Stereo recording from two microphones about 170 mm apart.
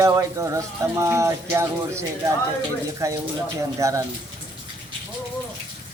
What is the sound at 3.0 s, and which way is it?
Speech, 20° right (ahead or behind).